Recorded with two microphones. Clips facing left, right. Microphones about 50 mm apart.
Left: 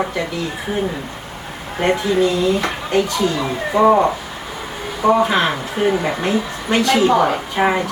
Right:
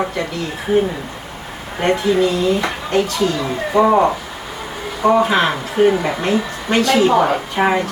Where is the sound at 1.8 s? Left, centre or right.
Centre.